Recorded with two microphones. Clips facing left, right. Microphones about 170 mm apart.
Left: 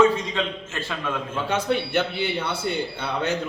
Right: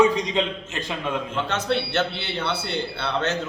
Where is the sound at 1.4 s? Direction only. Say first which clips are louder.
Left 5 dB; 10° left (ahead or behind).